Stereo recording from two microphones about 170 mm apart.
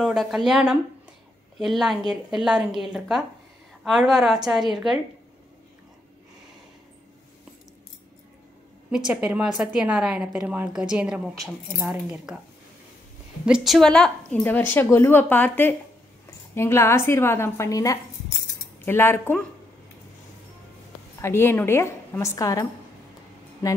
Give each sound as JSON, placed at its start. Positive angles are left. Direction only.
{"t": 0.0, "sound": "a woman's voice", "side_deg": 0}
{"t": 8.9, "sound": "a woman's voice", "side_deg": -5}
{"t": 13.5, "sound": "a woman's voice", "side_deg": 0}
{"t": 21.2, "sound": "a woman's voice", "side_deg": 15}